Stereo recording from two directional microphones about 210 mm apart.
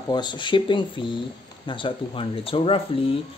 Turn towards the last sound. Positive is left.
turn(degrees=25)  # may be behind; listen again after turning